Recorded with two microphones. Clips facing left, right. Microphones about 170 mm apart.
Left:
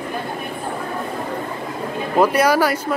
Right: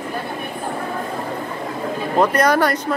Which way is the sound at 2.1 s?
5° left (ahead or behind).